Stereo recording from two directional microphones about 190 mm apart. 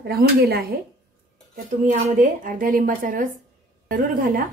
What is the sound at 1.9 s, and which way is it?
A woman's voice, 45° right (ahead or behind).